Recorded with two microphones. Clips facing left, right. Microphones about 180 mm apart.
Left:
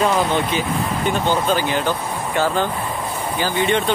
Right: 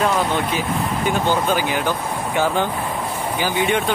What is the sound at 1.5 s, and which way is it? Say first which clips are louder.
Speech: left 1 dB; 10° right (ahead or behind).